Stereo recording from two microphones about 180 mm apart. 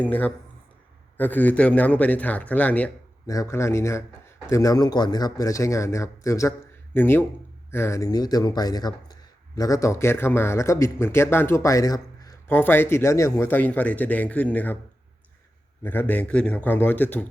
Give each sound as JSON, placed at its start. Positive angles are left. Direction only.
{"t": 0.0, "sound": "speech", "side_deg": 10}
{"t": 15.8, "sound": "speech", "side_deg": 10}